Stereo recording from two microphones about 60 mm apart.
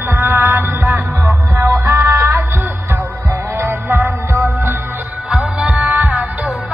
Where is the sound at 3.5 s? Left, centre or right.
Right.